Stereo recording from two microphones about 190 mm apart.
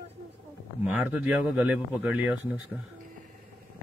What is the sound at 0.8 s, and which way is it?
Speech, 5° right (ahead or behind).